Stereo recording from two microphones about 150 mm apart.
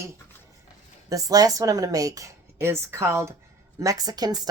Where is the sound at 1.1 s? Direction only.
25° right (ahead or behind).